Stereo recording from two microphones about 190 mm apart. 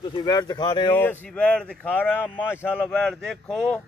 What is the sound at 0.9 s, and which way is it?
Speech, 10° left (ahead or behind).